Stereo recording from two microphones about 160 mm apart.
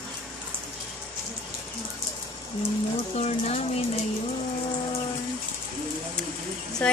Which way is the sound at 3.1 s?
40° left (ahead or behind).